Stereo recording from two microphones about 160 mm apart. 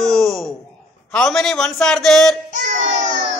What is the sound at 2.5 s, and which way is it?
Child singing, 50° right (ahead or behind).